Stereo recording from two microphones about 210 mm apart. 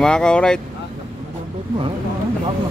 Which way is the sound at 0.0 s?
5° left (ahead or behind).